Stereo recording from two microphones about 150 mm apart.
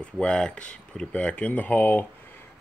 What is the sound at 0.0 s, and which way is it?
Speech, 5° left (ahead or behind).